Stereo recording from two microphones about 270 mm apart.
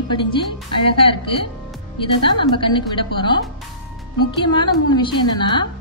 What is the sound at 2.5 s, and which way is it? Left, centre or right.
Speech, centre.